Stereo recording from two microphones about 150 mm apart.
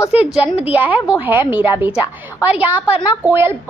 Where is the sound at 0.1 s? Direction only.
10° right (ahead or behind).